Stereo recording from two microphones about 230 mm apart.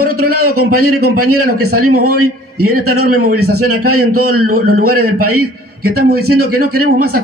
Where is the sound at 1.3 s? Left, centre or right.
Right.